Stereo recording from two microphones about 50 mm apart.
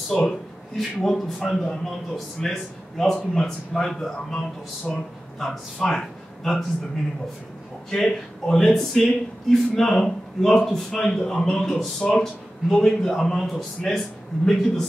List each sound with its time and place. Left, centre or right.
0.3 s a man's voice: centre
5.4 s speech: centre
7.9 s speech: centre